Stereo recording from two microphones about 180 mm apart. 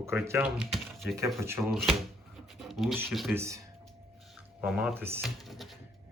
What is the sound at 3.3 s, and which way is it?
Speech, 15° right (ahead or behind).